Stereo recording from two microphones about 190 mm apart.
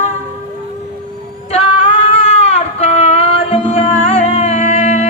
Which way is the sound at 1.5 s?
30° left (ahead or behind).